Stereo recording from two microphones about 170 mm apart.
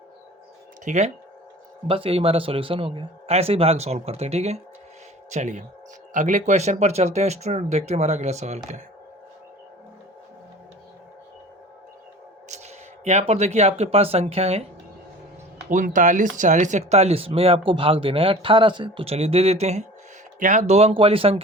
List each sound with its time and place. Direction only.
0.9 s a man's voice: 40° right (ahead or behind)
12.5 s speech: 40° right (ahead or behind)
15.7 s a man's voice: 50° right (ahead or behind); by 21.4 s 35° right (ahead or behind)